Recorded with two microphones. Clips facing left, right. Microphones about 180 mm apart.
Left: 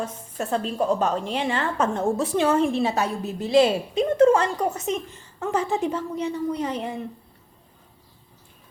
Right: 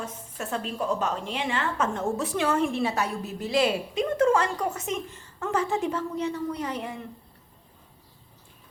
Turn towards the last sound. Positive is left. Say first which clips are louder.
# left 4 dB
turn(degrees=25)  # may be behind; listen again after turning